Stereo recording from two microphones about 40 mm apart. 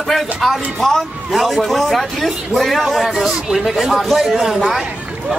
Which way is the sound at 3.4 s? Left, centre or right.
Centre.